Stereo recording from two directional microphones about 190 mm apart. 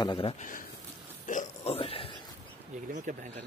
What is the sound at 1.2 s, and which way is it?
Oink, 35° left (ahead or behind).